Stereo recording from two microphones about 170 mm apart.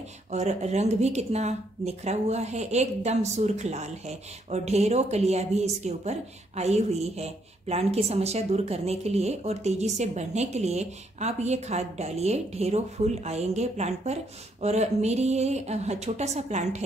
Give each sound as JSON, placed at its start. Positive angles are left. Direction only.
{"t": 0.3, "sound": "speech", "side_deg": -40}